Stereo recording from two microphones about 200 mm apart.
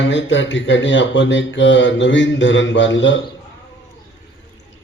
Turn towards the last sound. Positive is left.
turn(degrees=65)  # may be behind; listen again after turning